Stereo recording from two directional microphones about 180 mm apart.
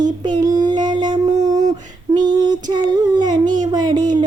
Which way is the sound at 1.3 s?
20° right (ahead or behind).